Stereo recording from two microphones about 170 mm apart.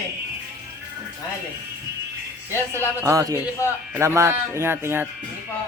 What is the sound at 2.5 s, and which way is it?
Speech, 15° left (ahead or behind).